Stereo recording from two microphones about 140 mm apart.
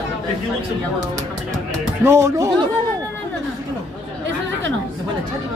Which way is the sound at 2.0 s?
20° right (ahead or behind).